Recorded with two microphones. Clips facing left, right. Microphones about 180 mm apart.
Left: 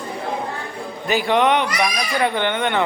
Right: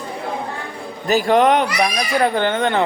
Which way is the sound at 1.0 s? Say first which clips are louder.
Right 3 dB; 40° right (ahead or behind).